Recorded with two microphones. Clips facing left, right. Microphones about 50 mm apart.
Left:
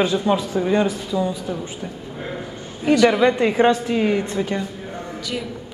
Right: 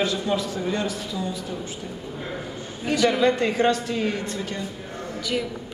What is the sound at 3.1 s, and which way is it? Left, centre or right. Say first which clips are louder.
Speech: left 4 dB; centre.